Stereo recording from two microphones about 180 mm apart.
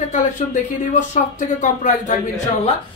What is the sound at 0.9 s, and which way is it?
Speech, 45° left (ahead or behind).